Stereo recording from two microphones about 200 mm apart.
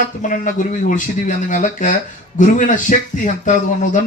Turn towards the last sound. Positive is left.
turn(degrees=40)  # may be behind; listen again after turning